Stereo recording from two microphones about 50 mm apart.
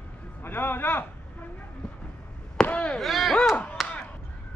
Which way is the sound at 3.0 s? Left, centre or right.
Centre.